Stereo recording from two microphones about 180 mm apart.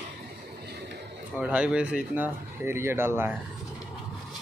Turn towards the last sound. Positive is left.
turn(degrees=-15)  # may be behind; listen again after turning